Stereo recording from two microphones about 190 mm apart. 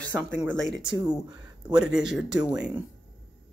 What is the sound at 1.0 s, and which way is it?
Speech, 20° right (ahead or behind).